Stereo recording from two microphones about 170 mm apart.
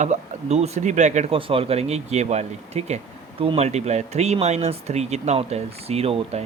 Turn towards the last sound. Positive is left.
turn(degrees=-35)  # may be behind; listen again after turning